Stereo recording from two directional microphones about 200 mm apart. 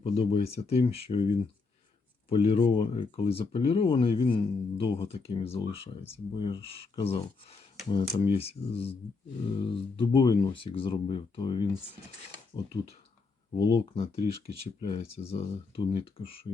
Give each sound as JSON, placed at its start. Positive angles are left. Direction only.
{"t": 0.0, "sound": "speech", "side_deg": 25}
{"t": 2.3, "sound": "speech", "side_deg": 25}
{"t": 13.6, "sound": "speech", "side_deg": 20}
{"t": 13.9, "sound": "speech", "side_deg": 30}